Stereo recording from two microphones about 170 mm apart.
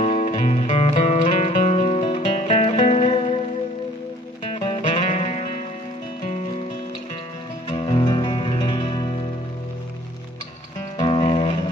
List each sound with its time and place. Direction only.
0.0 s music: 40° left (ahead or behind)
4.5 s music: 30° left (ahead or behind)
5.1 s music: 40° left (ahead or behind)
7.6 s music: 30° left (ahead or behind)
11.0 s music: 30° left (ahead or behind)